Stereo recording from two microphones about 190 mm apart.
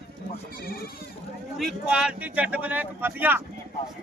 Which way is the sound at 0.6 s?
50° left (ahead or behind).